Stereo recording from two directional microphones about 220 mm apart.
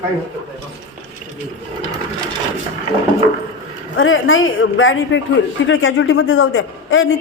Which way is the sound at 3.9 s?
60° left (ahead or behind).